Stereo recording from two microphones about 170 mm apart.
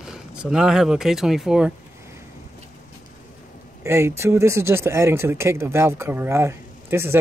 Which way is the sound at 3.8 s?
15° right (ahead or behind).